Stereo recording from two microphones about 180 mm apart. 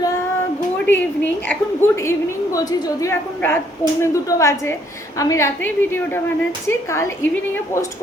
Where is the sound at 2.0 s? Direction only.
15° left (ahead or behind).